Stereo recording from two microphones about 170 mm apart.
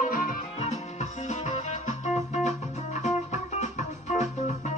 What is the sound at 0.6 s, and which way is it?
Music, 40° left (ahead or behind).